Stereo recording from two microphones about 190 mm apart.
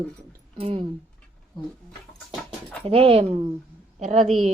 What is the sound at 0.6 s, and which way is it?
Speech, 30° right (ahead or behind).